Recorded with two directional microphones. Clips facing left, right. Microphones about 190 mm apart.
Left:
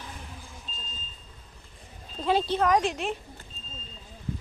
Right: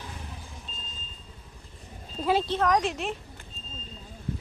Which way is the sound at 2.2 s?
Centre (ahead or behind).